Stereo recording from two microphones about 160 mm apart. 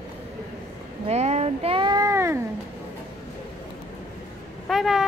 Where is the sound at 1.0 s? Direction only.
45° right (ahead or behind); by 2.3 s 20° right (ahead or behind).